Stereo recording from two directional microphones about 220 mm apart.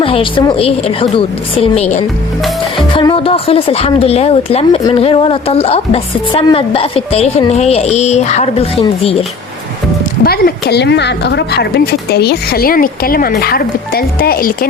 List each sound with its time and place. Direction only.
0.0 s a woman's voice: 25° left (ahead or behind)
2.9 s a woman's voice: 20° left (ahead or behind)
10.2 s speech: 45° left (ahead or behind)